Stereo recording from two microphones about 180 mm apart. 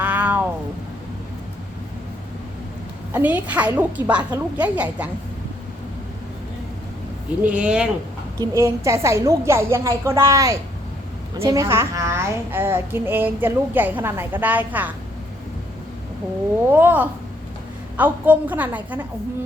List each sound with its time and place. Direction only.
0.0 s a sound: 10° right (ahead or behind)
3.1 s a woman's voice: 10° right (ahead or behind)
7.4 s a woman's voice: 5° right (ahead or behind)
8.4 s a woman's voice: 15° right (ahead or behind)
16.7 s a woman's voice: 10° right (ahead or behind)